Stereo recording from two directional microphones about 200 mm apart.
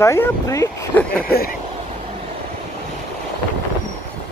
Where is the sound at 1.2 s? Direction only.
50° left (ahead or behind).